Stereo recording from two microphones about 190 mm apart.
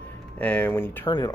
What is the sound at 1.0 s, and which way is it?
Speech, 20° left (ahead or behind).